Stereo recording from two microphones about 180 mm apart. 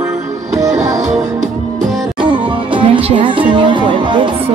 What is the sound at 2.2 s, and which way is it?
Music, 30° right (ahead or behind).